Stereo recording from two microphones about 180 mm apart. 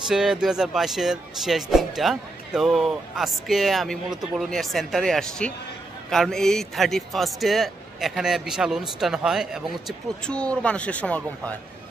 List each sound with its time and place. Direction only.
0.1 s a man's voice: 5° right (ahead or behind)